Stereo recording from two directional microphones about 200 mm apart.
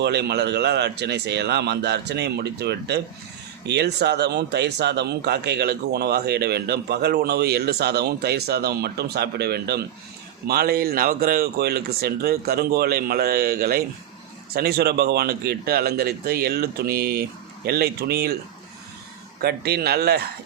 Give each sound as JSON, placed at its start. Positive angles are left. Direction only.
{"t": 0.0, "sound": "speech", "side_deg": -55}
{"t": 19.4, "sound": "speech", "side_deg": -55}